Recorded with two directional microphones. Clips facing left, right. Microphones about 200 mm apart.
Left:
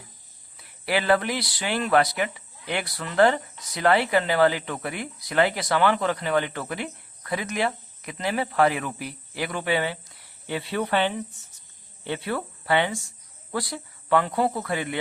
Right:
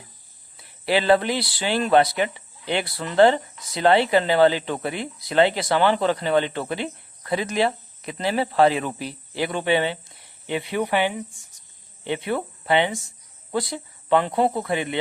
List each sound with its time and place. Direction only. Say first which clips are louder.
0.5 s speech: right 4 dB; 25° right (ahead or behind)